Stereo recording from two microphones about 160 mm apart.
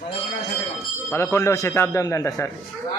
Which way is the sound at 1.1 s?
15° left (ahead or behind).